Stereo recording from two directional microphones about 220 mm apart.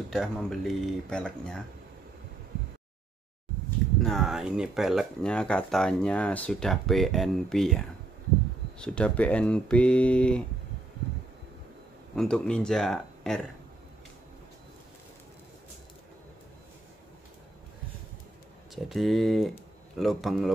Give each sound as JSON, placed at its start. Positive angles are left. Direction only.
{"t": 0.1, "sound": "speech", "side_deg": 0}
{"t": 4.0, "sound": "speech", "side_deg": 0}
{"t": 12.2, "sound": "speech", "side_deg": 5}
{"t": 18.9, "sound": "speech", "side_deg": 0}